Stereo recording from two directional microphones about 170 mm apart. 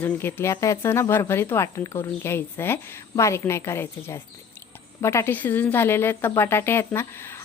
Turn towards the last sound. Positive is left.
turn(degrees=15)  # may be behind; listen again after turning